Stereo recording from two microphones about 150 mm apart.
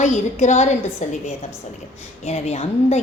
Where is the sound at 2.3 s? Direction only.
50° left (ahead or behind).